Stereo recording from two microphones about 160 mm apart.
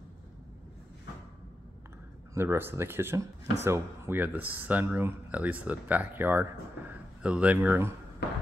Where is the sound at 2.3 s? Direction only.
15° right (ahead or behind).